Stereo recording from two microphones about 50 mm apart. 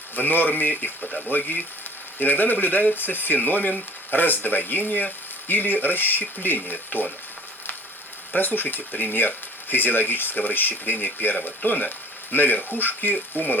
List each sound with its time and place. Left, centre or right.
0.2 s speech: left
8.4 s speech: left